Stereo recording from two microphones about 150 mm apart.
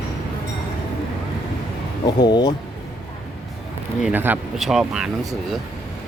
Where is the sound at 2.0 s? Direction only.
25° left (ahead or behind).